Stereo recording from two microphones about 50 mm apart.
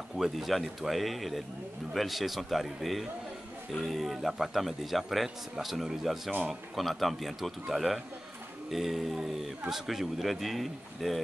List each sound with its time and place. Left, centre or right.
0.2 s speech: centre